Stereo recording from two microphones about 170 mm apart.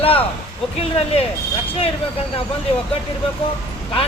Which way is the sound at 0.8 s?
35° left (ahead or behind).